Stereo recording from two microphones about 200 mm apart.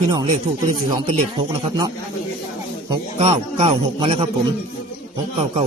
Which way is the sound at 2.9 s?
30° right (ahead or behind).